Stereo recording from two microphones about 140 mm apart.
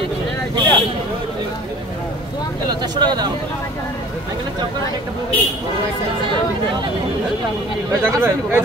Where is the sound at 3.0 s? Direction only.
30° right (ahead or behind).